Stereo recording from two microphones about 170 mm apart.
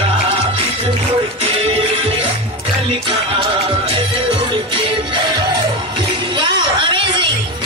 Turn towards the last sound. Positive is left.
turn(degrees=-30)  # may be behind; listen again after turning